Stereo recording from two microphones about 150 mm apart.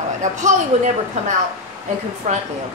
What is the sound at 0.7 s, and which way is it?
Speech, 45° right (ahead or behind).